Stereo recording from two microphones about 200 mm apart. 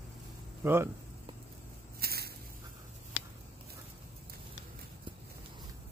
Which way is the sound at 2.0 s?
50° right (ahead or behind).